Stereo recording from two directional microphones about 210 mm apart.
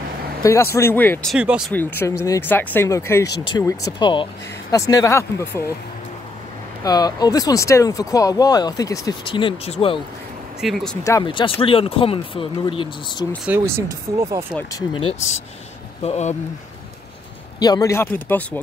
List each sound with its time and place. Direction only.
0.4 s speech: 15° left (ahead or behind)
1.3 s speech: 5° right (ahead or behind)
1.7 s speech: 10° left (ahead or behind)
6.8 s speech: 20° left (ahead or behind)
10.6 s speech: centre (ahead or behind)
11.1 s speech: 20° left (ahead or behind)
13.5 s speech: 10° right (ahead or behind)
14.5 s speech: 15° left (ahead or behind)
17.6 s speech: 15° left (ahead or behind)